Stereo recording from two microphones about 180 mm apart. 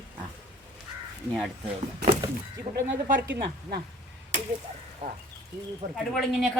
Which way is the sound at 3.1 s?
60° right (ahead or behind).